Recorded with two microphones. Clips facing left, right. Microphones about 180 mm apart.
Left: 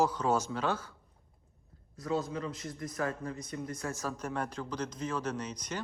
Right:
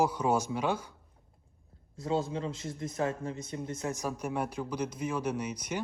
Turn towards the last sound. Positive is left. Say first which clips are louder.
# right 3 dB
turn(degrees=-10)  # may be behind; listen again after turning